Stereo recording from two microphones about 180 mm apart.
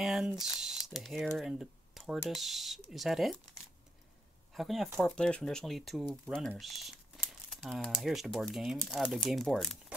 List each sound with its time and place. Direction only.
0.0 s speech: 5° right (ahead or behind)
4.6 s speech: centre (ahead or behind)